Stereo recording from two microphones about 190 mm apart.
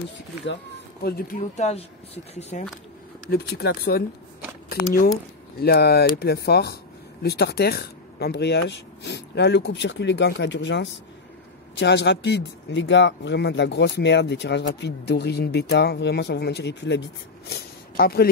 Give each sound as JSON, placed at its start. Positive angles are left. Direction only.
{"t": 1.0, "sound": "speech", "side_deg": 50}
{"t": 3.3, "sound": "speech", "side_deg": 55}
{"t": 5.6, "sound": "speech", "side_deg": 55}
{"t": 17.5, "sound": "speech", "side_deg": 55}